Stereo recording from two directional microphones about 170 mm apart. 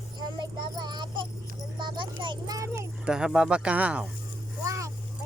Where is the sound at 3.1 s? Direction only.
5° right (ahead or behind).